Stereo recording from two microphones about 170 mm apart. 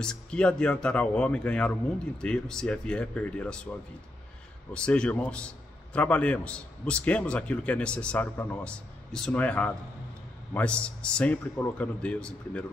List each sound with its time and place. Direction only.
0.0 s speech: 5° left (ahead or behind)
4.7 s a man's voice: 5° left (ahead or behind)